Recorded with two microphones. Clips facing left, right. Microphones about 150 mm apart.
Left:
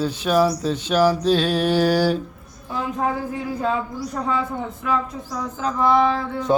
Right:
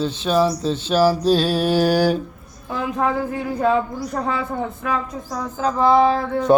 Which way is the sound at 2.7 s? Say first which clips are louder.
Right 2 dB; 70° right (ahead or behind).